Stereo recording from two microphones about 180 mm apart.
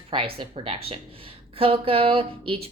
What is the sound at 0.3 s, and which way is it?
A woman's voice, 30° right (ahead or behind).